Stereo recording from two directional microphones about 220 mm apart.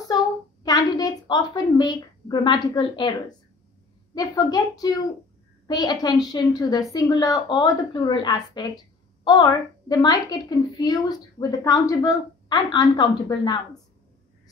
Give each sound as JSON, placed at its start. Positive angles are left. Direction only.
{"t": 0.7, "sound": "a woman's voice", "side_deg": 15}